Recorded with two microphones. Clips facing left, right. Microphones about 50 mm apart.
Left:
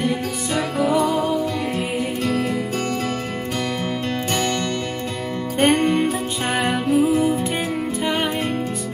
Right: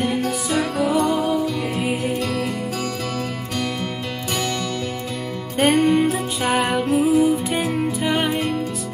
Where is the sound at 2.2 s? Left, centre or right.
Left.